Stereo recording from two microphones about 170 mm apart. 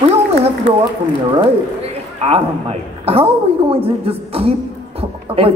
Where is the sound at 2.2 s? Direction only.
35° right (ahead or behind).